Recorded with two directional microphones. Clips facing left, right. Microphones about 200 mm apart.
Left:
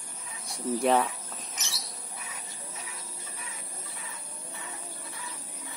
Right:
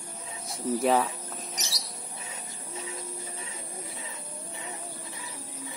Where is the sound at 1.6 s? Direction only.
35° right (ahead or behind).